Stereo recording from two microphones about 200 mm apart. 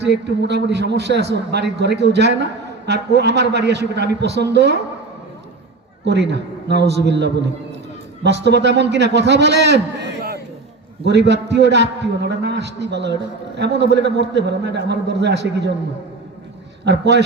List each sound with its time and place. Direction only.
0.0 s a man's voice: 60° right (ahead or behind)
6.1 s a man's voice: 60° right (ahead or behind)
16.8 s a man's voice: 60° right (ahead or behind)